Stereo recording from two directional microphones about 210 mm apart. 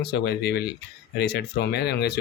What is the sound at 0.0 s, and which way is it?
Speech, 50° left (ahead or behind).